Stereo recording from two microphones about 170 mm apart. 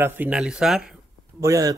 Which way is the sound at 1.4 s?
20° right (ahead or behind).